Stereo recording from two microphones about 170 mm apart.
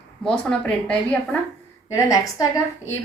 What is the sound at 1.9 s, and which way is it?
Speech, 20° left (ahead or behind).